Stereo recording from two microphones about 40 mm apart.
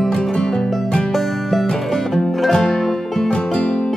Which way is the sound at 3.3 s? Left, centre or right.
Left.